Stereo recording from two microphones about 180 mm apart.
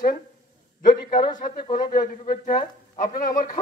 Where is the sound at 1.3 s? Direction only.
55° left (ahead or behind).